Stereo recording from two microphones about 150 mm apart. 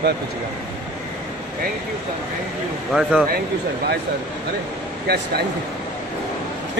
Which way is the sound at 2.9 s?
Centre (ahead or behind).